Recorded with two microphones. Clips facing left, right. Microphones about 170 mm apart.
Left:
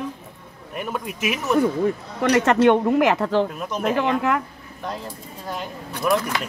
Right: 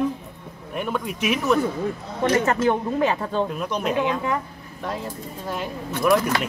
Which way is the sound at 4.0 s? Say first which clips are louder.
Left 4 dB; 80° left.